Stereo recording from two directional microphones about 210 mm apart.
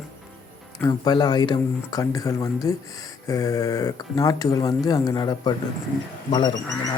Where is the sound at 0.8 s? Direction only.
20° left (ahead or behind).